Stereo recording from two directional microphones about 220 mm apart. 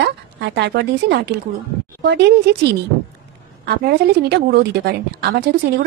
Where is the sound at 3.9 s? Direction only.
50° right (ahead or behind).